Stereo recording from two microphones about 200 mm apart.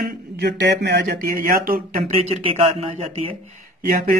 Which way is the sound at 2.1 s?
30° right (ahead or behind).